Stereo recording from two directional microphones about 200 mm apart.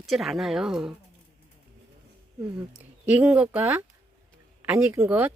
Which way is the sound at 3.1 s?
10° right (ahead or behind).